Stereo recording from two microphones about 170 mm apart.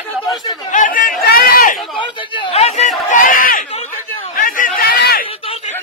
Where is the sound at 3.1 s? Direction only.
55° left (ahead or behind).